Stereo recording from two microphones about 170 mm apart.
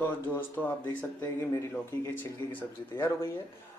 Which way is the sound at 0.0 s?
10° left (ahead or behind).